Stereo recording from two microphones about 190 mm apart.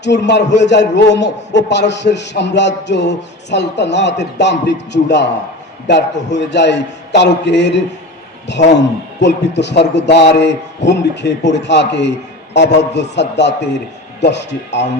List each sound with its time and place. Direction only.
0.0 s a man's voice: 65° left (ahead or behind)